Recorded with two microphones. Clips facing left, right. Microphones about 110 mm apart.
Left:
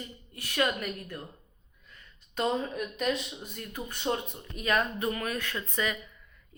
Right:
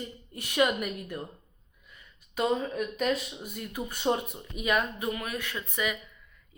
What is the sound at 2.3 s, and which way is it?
Speech, 5° right (ahead or behind).